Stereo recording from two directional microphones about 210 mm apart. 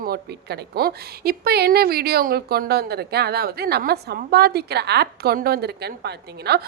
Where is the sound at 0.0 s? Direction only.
50° right (ahead or behind).